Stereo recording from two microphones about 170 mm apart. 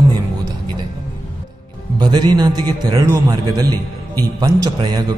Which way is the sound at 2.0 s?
25° right (ahead or behind).